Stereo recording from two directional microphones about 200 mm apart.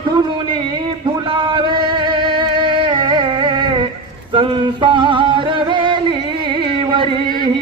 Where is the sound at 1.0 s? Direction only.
25° right (ahead or behind).